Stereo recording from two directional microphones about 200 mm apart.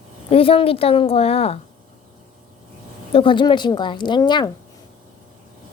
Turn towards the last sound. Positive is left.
turn(degrees=20)  # may be behind; listen again after turning